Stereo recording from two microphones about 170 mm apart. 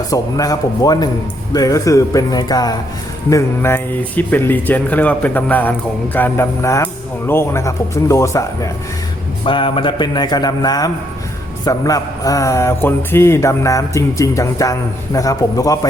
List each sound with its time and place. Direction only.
0.1 s a man's voice: 20° left (ahead or behind)
9.4 s a man's voice: 30° left (ahead or behind)